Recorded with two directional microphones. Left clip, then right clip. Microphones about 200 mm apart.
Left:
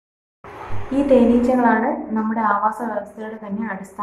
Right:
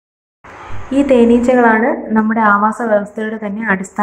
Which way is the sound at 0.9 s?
30° right (ahead or behind).